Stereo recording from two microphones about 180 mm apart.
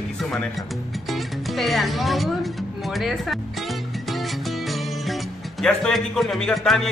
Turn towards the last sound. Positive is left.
turn(degrees=0)  # may be behind; listen again after turning